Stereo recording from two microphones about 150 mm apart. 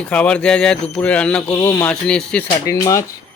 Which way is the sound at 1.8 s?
5° left (ahead or behind).